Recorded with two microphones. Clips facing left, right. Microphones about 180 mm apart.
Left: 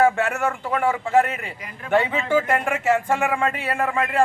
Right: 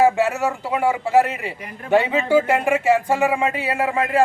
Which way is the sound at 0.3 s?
5° right (ahead or behind).